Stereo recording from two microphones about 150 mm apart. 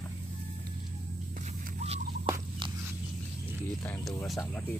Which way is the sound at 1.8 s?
45° right (ahead or behind).